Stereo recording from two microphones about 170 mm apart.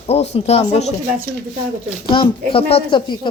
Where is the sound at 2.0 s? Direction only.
30° left (ahead or behind).